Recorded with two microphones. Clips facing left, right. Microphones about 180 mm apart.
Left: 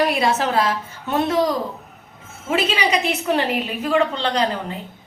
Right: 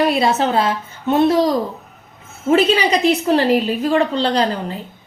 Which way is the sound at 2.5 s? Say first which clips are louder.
Right 6 dB; 35° right (ahead or behind).